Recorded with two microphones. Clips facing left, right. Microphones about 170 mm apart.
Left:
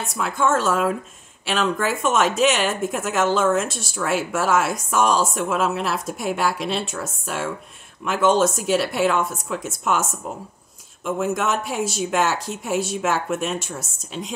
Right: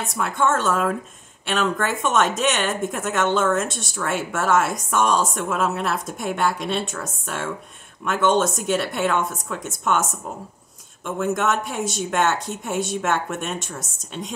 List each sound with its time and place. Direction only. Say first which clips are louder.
0.0 s speech: even; centre (ahead or behind)
11.1 s speech: right 1 dB; 5° left (ahead or behind)